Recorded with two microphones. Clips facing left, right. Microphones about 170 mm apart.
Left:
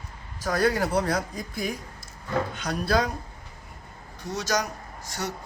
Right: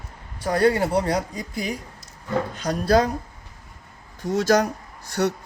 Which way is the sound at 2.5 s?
35° right (ahead or behind).